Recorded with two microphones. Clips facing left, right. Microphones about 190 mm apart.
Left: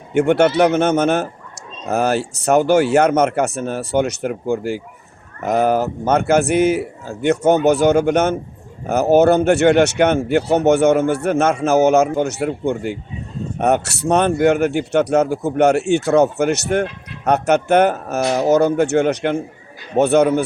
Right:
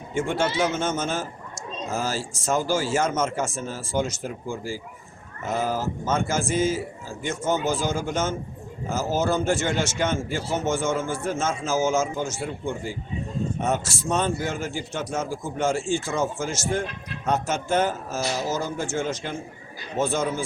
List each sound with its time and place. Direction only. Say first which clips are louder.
0.1 s speech: left 11 dB; 65° left (ahead or behind)